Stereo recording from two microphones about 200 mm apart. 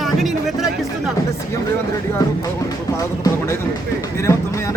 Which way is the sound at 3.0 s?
15° left (ahead or behind).